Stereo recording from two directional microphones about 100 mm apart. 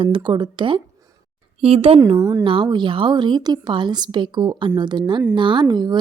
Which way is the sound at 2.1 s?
30° right (ahead or behind).